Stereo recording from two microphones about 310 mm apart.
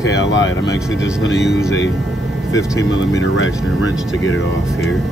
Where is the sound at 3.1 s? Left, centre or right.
Left.